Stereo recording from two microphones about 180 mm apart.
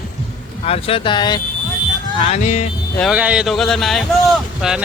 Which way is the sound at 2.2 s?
40° left (ahead or behind).